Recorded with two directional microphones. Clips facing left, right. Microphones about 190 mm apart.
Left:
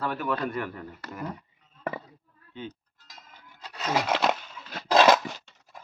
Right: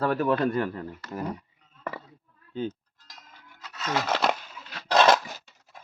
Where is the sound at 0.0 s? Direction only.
40° right (ahead or behind).